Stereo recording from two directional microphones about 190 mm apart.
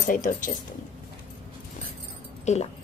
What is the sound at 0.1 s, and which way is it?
Speech, 45° left (ahead or behind).